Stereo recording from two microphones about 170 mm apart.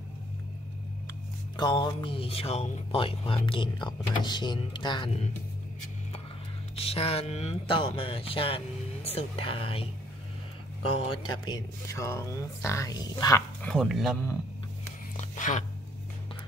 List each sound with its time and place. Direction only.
1.6 s speech: 25° left (ahead or behind)
6.7 s speech: 35° left (ahead or behind)
11.2 s speech: 20° left (ahead or behind)
13.6 s speech: 5° left (ahead or behind)
15.1 s a sound: 45° left (ahead or behind)